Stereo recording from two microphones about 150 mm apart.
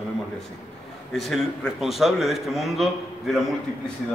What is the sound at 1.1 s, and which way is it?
Speech, centre (ahead or behind).